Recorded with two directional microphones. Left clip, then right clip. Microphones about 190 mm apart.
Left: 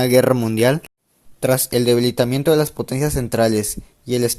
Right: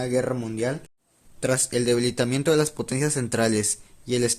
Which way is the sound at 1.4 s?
25° left (ahead or behind).